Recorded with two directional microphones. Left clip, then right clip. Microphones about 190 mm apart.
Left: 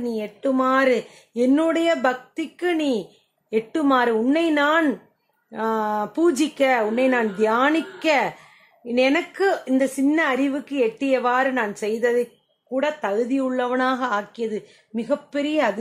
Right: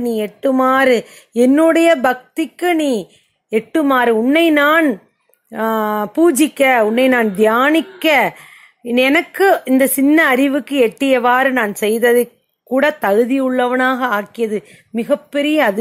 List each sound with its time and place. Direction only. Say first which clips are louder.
0.0 s a woman's voice: right 8 dB; 35° right (ahead or behind)